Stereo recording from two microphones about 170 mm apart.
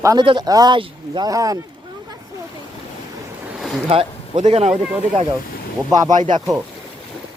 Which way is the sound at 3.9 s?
35° right (ahead or behind).